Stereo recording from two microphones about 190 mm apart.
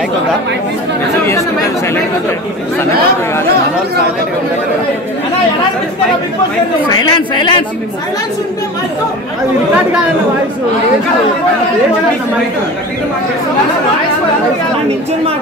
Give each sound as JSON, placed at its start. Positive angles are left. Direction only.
{"t": 7.1, "sound": "speech", "side_deg": 25}